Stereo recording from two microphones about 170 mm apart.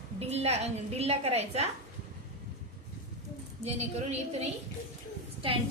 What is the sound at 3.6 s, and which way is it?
Speech, 40° right (ahead or behind).